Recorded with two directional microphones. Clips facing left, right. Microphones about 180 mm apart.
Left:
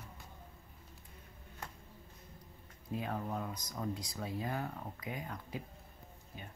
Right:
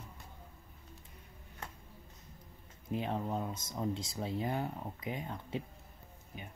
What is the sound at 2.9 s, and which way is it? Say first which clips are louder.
Speech: right 3 dB; 25° right (ahead or behind).